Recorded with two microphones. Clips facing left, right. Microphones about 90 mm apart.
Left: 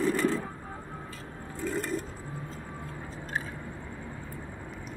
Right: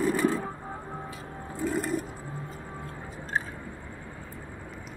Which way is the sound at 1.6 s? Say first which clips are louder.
Right 3 dB; 10° right (ahead or behind).